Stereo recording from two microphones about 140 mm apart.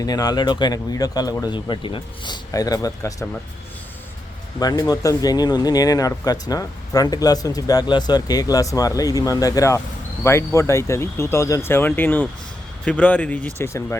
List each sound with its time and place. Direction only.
0.0 s speech: 25° left (ahead or behind)
4.6 s speech: 30° left (ahead or behind)